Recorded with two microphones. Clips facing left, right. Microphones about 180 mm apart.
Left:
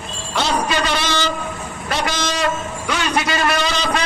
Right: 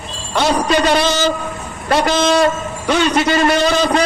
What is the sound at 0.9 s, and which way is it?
Speech, 50° right (ahead or behind).